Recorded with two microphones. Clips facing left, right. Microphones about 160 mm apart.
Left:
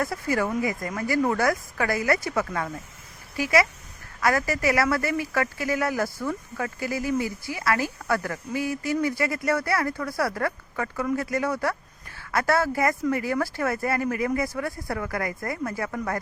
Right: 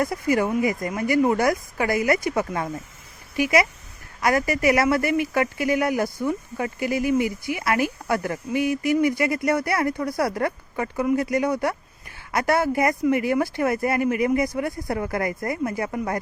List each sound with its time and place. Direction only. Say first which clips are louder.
0.0 s speech: right 4 dB; 15° right (ahead or behind)